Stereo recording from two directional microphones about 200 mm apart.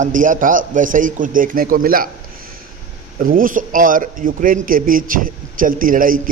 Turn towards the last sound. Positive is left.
turn(degrees=-45)  # may be behind; listen again after turning